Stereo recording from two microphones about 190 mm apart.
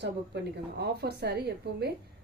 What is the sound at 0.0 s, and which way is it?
A woman's voice, 65° right (ahead or behind).